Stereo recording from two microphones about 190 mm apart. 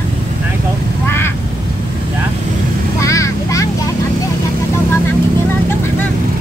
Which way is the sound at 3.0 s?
15° left (ahead or behind).